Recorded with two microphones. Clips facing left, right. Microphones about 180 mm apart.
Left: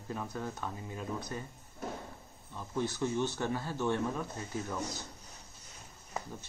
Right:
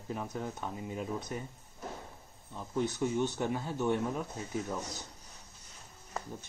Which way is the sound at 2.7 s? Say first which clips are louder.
Right 2 dB; 15° right (ahead or behind).